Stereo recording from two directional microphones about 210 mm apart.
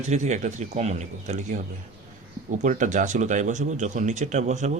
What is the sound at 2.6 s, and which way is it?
Speech, 35° right (ahead or behind).